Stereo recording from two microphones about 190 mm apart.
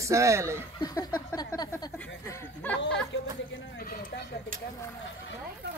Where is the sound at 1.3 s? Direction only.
20° left (ahead or behind).